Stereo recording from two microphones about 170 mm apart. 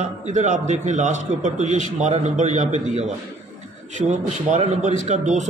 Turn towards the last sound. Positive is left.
turn(degrees=-45)  # may be behind; listen again after turning